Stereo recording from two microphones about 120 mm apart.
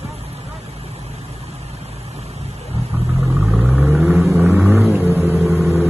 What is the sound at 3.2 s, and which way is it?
Vehicle, 5° right (ahead or behind).